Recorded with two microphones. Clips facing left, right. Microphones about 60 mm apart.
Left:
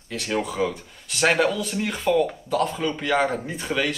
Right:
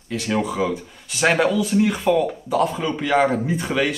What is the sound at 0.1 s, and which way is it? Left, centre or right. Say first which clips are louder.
Speech: right 4 dB; centre.